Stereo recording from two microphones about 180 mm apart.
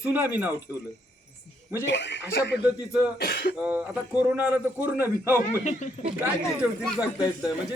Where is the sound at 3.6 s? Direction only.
10° right (ahead or behind).